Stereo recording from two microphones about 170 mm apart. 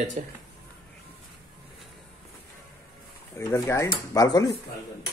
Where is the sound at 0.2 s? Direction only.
45° right (ahead or behind).